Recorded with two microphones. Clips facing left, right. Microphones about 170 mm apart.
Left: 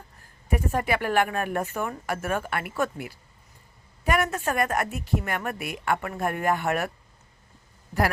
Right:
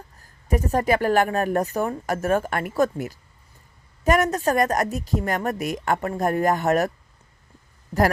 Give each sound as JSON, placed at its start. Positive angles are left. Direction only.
{"t": 0.4, "sound": "a woman's voice", "side_deg": -40}